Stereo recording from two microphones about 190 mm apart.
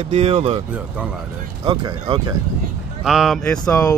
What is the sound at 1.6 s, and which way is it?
Speech, 25° right (ahead or behind).